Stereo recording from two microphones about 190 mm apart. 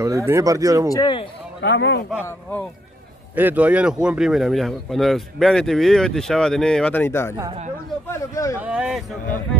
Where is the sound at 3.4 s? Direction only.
10° right (ahead or behind); by 8.6 s 15° left (ahead or behind).